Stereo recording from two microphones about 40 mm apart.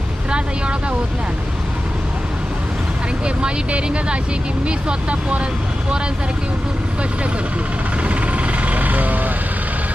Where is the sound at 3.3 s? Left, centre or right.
Right.